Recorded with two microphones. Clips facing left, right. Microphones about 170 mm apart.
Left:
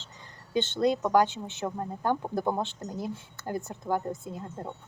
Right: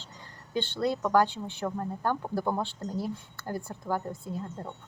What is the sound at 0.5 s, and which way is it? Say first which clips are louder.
A woman's voice: left 3 dB; 20° left (ahead or behind).